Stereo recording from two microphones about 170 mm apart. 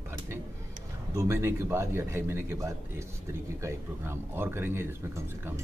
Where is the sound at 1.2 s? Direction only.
15° right (ahead or behind).